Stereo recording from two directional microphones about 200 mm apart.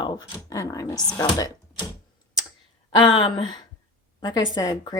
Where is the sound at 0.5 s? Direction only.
15° left (ahead or behind).